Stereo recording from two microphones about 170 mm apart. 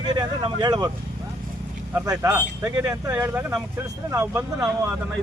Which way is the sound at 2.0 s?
15° right (ahead or behind).